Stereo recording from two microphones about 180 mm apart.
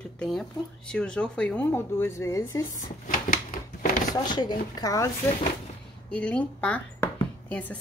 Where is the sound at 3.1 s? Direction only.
50° left (ahead or behind).